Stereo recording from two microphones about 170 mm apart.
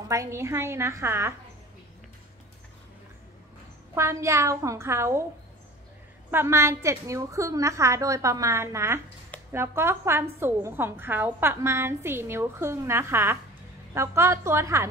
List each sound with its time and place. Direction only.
0.1 s a woman's voice: 15° right (ahead or behind)
3.9 s a woman's voice: 15° right (ahead or behind)
6.3 s a woman's voice: 15° right (ahead or behind)